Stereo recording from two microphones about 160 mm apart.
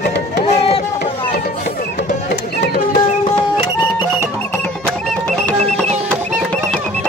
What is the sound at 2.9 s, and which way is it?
Music, 30° left (ahead or behind).